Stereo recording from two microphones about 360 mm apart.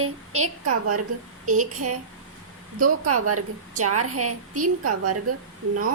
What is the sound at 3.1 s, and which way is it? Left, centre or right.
A woman's voice, right.